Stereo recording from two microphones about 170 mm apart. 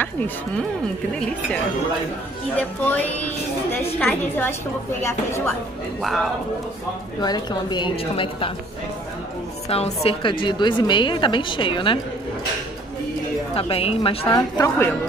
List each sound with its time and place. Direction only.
0.0 s a woman's voice: 10° left (ahead or behind)
7.2 s a woman's voice: 25° left (ahead or behind)
9.7 s a woman's voice: 35° left (ahead or behind)
13.6 s a woman's voice: 35° left (ahead or behind)
14.3 s a woman's voice: 20° left (ahead or behind)